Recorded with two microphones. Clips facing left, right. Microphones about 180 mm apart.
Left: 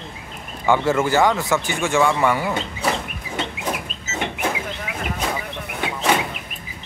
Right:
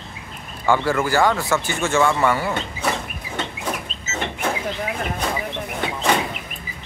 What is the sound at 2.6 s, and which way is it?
Chicken, 10° left (ahead or behind).